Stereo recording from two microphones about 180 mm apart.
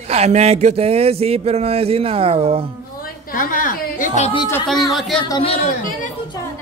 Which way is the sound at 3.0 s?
50° left (ahead or behind).